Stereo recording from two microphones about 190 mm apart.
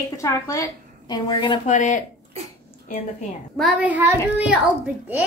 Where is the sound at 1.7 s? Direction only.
40° left (ahead or behind).